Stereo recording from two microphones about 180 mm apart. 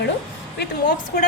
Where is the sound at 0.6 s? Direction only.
65° left (ahead or behind).